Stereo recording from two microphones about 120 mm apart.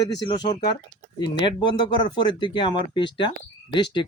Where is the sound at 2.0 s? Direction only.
40° left (ahead or behind).